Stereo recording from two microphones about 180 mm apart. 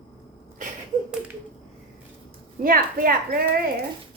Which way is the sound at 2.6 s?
55° right (ahead or behind).